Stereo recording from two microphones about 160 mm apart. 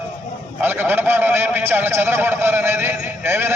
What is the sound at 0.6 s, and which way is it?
A man's voice, 15° right (ahead or behind).